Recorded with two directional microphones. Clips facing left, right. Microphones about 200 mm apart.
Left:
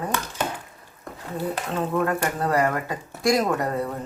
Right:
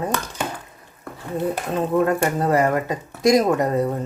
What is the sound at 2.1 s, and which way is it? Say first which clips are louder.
A woman's voice: right 5 dB; 20° right (ahead or behind).